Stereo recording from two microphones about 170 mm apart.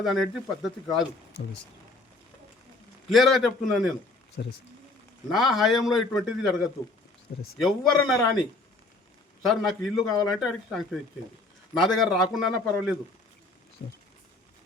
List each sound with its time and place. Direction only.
0.0 s a man's voice: centre (ahead or behind)
3.1 s a man's voice: centre (ahead or behind)
4.4 s speech: 65° left (ahead or behind)
5.3 s a man's voice: centre (ahead or behind)
7.6 s a man's voice: centre (ahead or behind)
9.4 s a man's voice: centre (ahead or behind)